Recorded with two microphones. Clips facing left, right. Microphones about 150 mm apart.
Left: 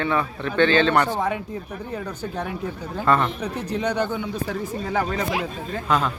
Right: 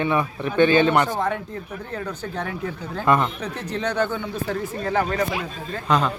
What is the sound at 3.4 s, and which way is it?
A man's voice, 10° left (ahead or behind).